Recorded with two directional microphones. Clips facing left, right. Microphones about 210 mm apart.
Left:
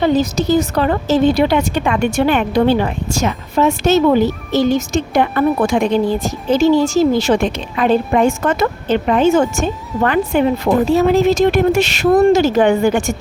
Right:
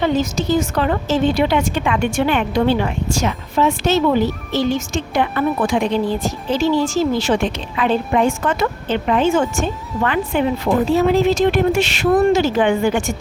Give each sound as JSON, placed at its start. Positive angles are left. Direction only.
{"t": 0.0, "sound": "a woman's voice", "side_deg": 40}